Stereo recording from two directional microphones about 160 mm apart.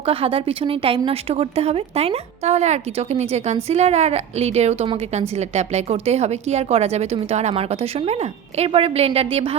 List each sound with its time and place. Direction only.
0.0 s speech: 35° right (ahead or behind)